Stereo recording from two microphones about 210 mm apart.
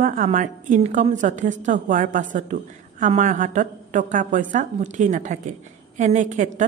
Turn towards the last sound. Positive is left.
turn(degrees=-35)  # may be behind; listen again after turning